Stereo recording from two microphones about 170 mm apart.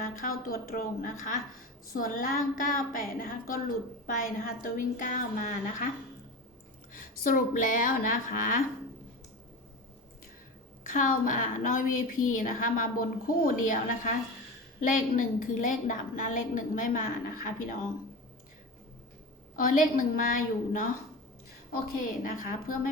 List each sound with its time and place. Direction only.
0.0 s a woman's voice: 55° left (ahead or behind)
6.9 s a woman's voice: 55° left (ahead or behind)
10.8 s a woman's voice: 50° left (ahead or behind)
19.5 s a woman's voice: 50° left (ahead or behind)
22.2 s a woman's voice: 50° left (ahead or behind)